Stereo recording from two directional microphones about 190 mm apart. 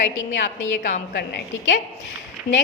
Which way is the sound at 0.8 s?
40° left (ahead or behind).